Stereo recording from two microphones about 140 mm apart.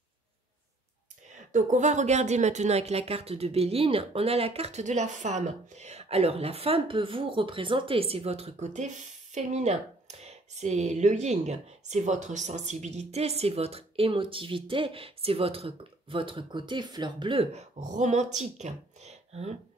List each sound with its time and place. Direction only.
1.5 s speech: 60° right (ahead or behind)